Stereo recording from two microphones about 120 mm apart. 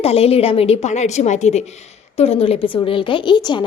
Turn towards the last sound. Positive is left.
turn(degrees=40)  # may be behind; listen again after turning